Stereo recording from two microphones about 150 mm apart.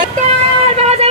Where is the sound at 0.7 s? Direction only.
45° right (ahead or behind).